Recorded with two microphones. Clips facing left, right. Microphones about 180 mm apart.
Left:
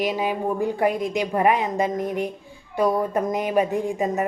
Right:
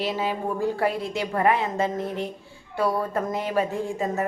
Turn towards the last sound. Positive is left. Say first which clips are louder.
# left 3 dB
turn(degrees=15)  # may be behind; listen again after turning